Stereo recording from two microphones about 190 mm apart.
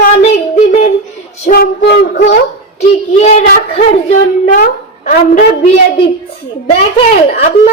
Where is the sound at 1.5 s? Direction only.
50° left (ahead or behind).